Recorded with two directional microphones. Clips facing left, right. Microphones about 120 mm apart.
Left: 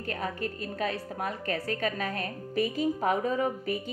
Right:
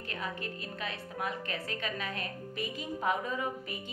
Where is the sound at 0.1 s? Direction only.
40° left (ahead or behind).